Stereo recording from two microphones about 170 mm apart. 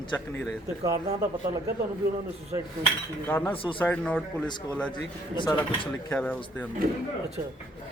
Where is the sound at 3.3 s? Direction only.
10° left (ahead or behind).